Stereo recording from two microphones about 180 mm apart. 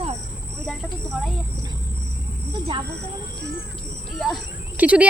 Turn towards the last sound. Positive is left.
turn(degrees=-10)  # may be behind; listen again after turning